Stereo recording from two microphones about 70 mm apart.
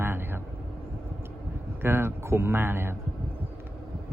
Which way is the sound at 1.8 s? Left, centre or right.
Right.